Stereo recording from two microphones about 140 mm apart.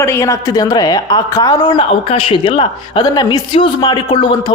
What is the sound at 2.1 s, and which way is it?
A man's voice, 40° left (ahead or behind).